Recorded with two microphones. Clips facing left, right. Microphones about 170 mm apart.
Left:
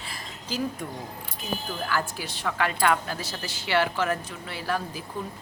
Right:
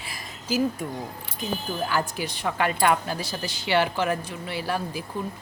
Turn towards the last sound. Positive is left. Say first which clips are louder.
# right 2 dB
turn(degrees=-15)  # may be behind; listen again after turning